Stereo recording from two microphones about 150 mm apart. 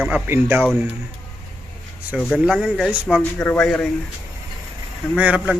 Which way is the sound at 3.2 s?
10° left (ahead or behind).